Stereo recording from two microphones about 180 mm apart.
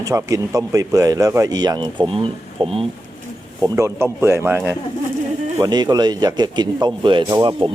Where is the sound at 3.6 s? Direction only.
15° right (ahead or behind).